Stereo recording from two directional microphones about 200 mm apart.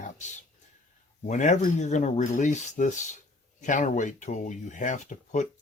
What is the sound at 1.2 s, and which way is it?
Speech, 35° left (ahead or behind).